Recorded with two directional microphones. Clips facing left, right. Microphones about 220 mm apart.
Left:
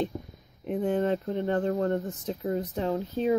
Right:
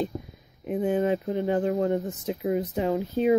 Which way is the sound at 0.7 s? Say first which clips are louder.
Right 2 dB; 10° right (ahead or behind).